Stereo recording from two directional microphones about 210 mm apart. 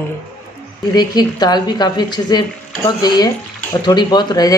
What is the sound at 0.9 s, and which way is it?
A woman's voice, 20° left (ahead or behind).